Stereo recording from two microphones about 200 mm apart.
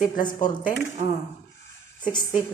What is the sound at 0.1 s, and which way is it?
Speech, 40° left (ahead or behind).